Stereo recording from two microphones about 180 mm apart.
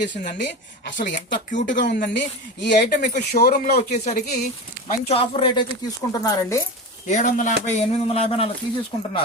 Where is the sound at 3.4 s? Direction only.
60° left (ahead or behind).